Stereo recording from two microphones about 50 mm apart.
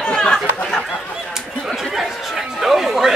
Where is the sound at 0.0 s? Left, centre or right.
Centre.